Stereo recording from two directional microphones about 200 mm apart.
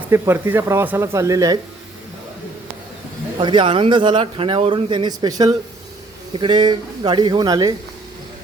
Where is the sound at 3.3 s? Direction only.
25° right (ahead or behind).